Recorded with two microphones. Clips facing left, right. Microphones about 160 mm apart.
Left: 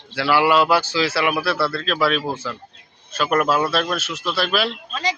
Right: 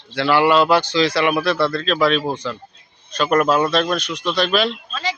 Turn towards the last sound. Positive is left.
turn(degrees=15)  # may be behind; listen again after turning